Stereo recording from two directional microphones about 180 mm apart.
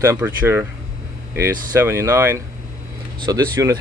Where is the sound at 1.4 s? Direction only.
15° right (ahead or behind).